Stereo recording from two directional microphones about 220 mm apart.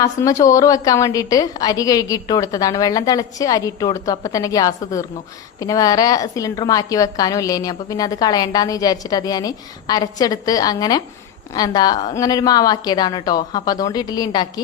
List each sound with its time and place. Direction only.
0.0 s a woman's voice: 15° left (ahead or behind)